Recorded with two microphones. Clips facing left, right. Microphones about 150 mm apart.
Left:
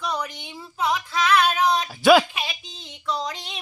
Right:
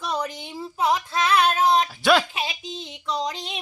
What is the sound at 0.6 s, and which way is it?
Child singing, 30° right (ahead or behind).